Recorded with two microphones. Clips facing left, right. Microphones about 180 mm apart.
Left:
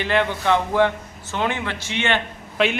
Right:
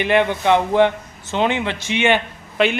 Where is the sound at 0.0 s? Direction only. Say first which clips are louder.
Right 4 dB; 15° right (ahead or behind).